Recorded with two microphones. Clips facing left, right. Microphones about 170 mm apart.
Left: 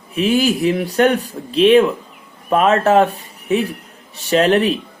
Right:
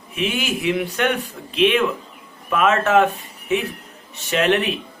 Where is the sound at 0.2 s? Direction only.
35° left (ahead or behind).